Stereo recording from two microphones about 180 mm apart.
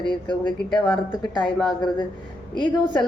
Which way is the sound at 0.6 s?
5° left (ahead or behind).